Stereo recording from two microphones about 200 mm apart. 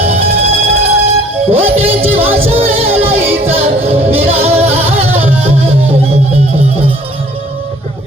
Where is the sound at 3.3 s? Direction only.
10° right (ahead or behind).